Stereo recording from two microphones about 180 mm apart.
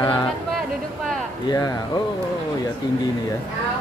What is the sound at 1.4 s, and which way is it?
Speech, 20° left (ahead or behind).